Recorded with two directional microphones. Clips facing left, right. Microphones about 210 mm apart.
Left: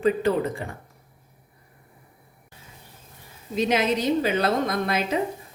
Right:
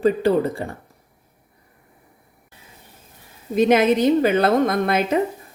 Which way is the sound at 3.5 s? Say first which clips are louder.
Right 7 dB; 50° right (ahead or behind).